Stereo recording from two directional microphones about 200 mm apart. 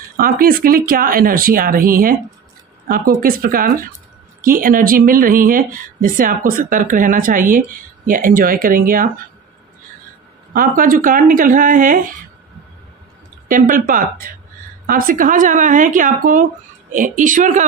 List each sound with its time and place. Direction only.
0.2 s speech: 45° right (ahead or behind)
10.5 s speech: 45° right (ahead or behind)
13.5 s speech: 40° right (ahead or behind)